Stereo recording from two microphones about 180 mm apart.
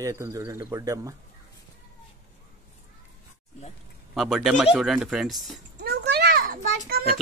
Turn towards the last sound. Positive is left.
turn(degrees=-55)  # may be behind; listen again after turning